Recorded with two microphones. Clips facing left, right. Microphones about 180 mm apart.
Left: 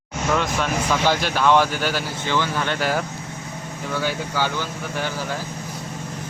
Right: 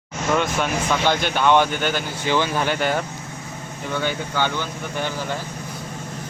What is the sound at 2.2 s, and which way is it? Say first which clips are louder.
Speech: right 3 dB; 15° right (ahead or behind).